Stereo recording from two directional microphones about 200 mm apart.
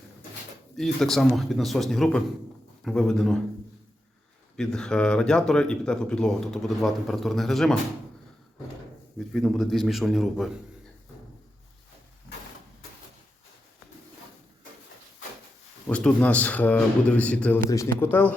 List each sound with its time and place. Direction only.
0.8 s speech: centre (ahead or behind)
4.5 s speech: 5° left (ahead or behind)
9.1 s speech: centre (ahead or behind)
15.9 s speech: 5° left (ahead or behind)